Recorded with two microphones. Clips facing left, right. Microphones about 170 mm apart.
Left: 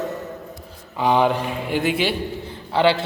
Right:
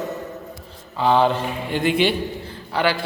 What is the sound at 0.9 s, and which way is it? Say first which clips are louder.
A man's voice: right 1 dB; 15° left (ahead or behind).